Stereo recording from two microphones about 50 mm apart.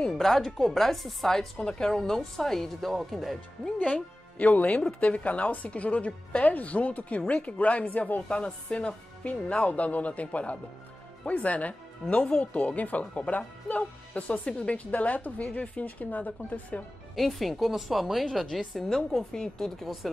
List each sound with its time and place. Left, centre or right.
0.2 s speech: centre
3.8 s speech: left
17.1 s speech: centre